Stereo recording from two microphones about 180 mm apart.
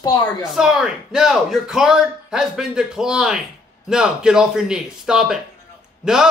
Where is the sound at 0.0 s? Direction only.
20° left (ahead or behind).